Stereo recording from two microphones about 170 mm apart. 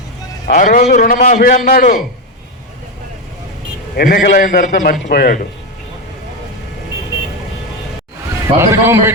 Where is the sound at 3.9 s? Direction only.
60° left (ahead or behind).